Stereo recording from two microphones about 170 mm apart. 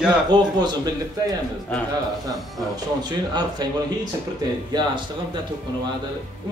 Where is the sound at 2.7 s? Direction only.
25° right (ahead or behind).